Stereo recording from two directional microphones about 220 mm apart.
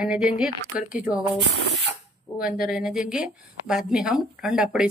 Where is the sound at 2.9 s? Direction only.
5° right (ahead or behind).